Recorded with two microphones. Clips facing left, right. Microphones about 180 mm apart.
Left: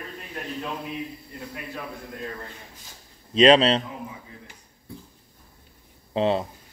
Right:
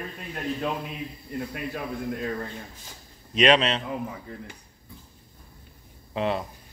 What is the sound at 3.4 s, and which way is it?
Speech, 30° left (ahead or behind).